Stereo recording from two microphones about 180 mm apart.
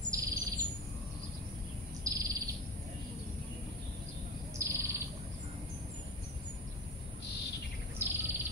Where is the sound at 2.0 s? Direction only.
20° right (ahead or behind).